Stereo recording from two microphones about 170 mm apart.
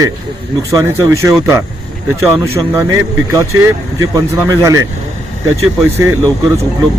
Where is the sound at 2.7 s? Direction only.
15° right (ahead or behind).